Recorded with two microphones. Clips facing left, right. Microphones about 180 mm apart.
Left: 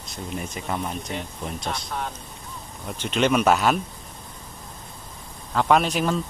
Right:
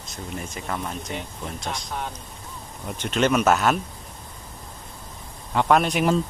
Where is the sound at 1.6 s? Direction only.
5° right (ahead or behind).